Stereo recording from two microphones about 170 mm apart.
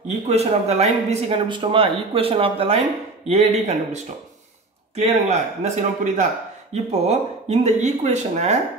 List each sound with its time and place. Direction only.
0.1 s speech: 40° right (ahead or behind)